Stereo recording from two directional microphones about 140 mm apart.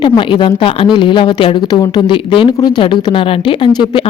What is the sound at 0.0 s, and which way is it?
Speech, 35° left (ahead or behind).